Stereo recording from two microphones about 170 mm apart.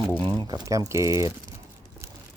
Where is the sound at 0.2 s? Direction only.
25° right (ahead or behind).